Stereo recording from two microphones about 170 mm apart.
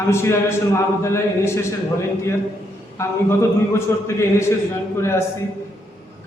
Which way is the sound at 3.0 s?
15° left (ahead or behind).